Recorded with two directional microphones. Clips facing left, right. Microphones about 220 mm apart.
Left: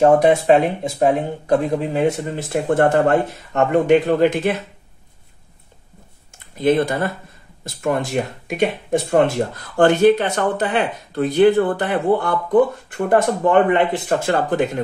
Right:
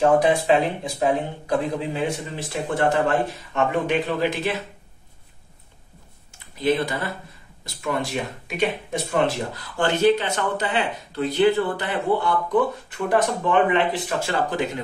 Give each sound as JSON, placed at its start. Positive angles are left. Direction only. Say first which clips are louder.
{"t": 0.8, "sound": "speech", "louder": "left 5 dB", "side_deg": 45}
{"t": 6.6, "sound": "speech", "louder": "left 5 dB", "side_deg": 50}